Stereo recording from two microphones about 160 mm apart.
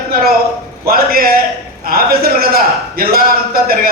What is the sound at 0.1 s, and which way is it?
A man's voice, 75° right (ahead or behind).